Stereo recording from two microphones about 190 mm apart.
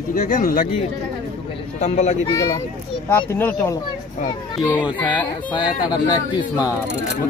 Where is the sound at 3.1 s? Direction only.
10° left (ahead or behind).